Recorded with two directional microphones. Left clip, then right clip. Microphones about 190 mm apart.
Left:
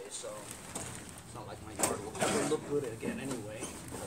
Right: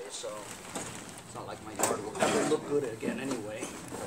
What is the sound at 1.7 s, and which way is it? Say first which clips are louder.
Speech: right 4 dB; 15° left (ahead or behind).